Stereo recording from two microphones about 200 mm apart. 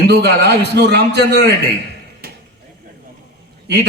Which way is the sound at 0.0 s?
55° right (ahead or behind).